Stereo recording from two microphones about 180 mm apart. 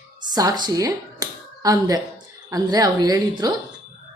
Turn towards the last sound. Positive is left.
turn(degrees=-20)  # may be behind; listen again after turning